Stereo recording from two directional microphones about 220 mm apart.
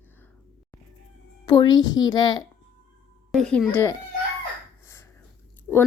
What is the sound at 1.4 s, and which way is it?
A child's voice, 20° left (ahead or behind).